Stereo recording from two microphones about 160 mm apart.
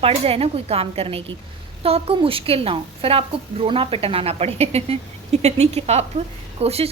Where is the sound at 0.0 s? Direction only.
35° right (ahead or behind).